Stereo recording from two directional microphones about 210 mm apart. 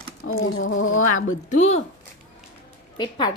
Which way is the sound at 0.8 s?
75° left (ahead or behind).